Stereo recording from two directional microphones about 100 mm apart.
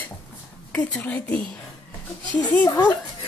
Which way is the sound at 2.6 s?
40° left (ahead or behind).